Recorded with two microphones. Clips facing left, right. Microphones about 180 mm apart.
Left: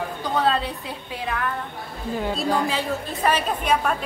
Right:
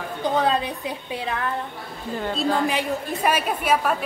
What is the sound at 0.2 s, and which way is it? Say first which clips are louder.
A woman's voice: right 2 dB; 15° right (ahead or behind).